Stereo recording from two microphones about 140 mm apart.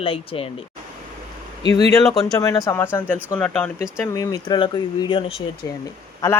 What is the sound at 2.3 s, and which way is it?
Speech, 25° left (ahead or behind).